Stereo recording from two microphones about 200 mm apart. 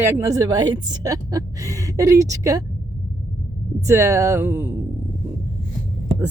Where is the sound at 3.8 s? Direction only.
15° right (ahead or behind).